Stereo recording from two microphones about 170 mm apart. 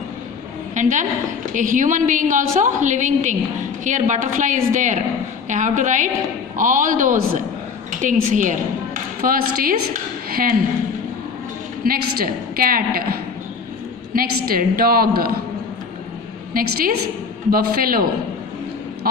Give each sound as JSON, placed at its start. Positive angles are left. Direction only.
{"t": 0.7, "sound": "a woman's voice", "side_deg": -45}
{"t": 11.9, "sound": "a woman's voice", "side_deg": -60}
{"t": 16.6, "sound": "a woman's voice", "side_deg": -55}